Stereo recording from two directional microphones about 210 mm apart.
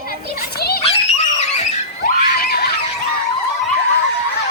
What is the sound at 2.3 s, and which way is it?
Screaming, 45° left (ahead or behind).